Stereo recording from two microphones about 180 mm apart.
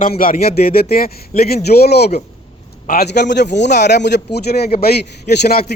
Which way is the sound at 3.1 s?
70° left (ahead or behind).